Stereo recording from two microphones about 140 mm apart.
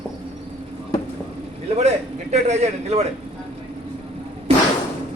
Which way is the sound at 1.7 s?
55° right (ahead or behind).